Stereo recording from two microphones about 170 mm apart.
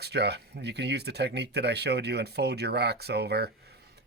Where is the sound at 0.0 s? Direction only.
75° right (ahead or behind).